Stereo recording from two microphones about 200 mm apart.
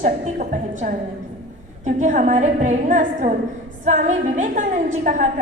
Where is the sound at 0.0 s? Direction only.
40° right (ahead or behind).